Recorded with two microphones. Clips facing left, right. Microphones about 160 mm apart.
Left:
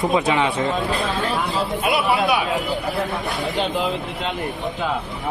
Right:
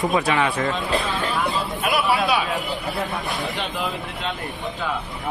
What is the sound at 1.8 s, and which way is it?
Speech, 20° left (ahead or behind).